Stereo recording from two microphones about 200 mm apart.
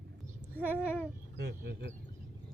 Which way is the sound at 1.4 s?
50° right (ahead or behind).